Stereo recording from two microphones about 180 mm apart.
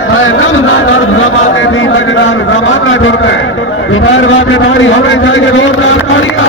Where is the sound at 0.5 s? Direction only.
90° left.